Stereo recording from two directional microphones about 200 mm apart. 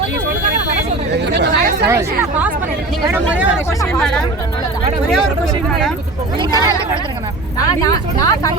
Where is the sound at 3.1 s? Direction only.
10° right (ahead or behind).